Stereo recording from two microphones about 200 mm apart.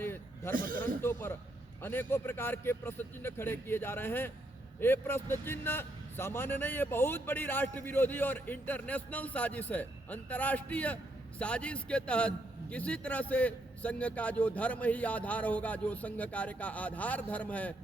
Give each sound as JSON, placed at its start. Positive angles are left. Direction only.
{"t": 0.0, "sound": "a sound", "side_deg": 10}
{"t": 0.5, "sound": "speech", "side_deg": -45}
{"t": 1.0, "sound": "a man's voice", "side_deg": 10}